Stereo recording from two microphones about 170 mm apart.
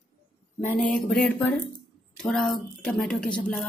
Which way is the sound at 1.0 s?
5° left (ahead or behind).